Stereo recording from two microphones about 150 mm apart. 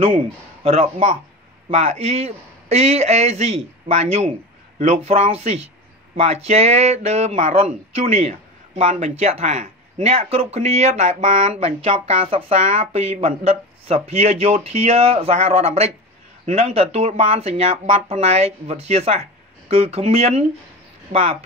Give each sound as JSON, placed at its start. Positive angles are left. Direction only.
{"t": 0.7, "sound": "speech", "side_deg": -40}
{"t": 8.1, "sound": "a sound", "side_deg": -45}
{"t": 9.0, "sound": "speech", "side_deg": -45}
{"t": 11.6, "sound": "speech", "side_deg": -40}